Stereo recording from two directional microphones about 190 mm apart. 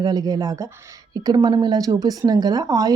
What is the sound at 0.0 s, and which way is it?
A woman's voice, 20° right (ahead or behind).